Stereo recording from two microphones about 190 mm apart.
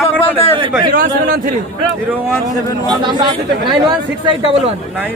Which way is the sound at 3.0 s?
25° right (ahead or behind).